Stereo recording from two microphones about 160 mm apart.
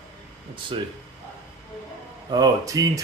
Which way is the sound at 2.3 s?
20° right (ahead or behind).